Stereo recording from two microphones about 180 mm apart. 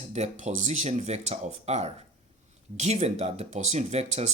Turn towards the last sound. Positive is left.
turn(degrees=-40)  # may be behind; listen again after turning